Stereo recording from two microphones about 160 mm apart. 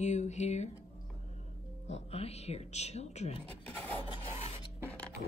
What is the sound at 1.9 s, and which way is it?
Speech, 40° left (ahead or behind).